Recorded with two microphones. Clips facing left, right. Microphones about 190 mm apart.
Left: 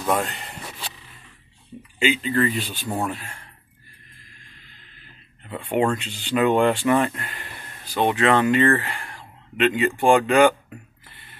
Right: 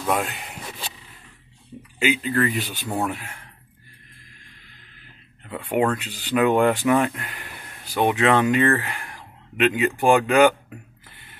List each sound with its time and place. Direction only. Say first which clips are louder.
0.0 s speech: left 1 dB; 5° right (ahead or behind)
2.0 s speech: even; 5° right (ahead or behind)
5.5 s speech: even; centre (ahead or behind)